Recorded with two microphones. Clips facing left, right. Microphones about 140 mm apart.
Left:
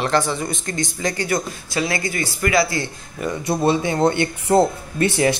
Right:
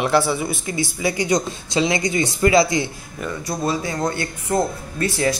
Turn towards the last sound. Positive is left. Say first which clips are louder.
# left 4 dB
turn(degrees=25)  # may be behind; listen again after turning